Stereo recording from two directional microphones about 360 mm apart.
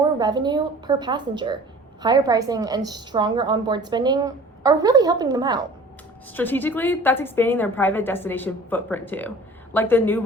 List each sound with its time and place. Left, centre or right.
0.2 s a woman's voice: centre
6.3 s a woman's voice: centre